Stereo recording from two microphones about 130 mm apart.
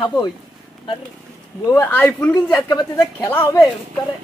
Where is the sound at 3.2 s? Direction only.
20° left (ahead or behind).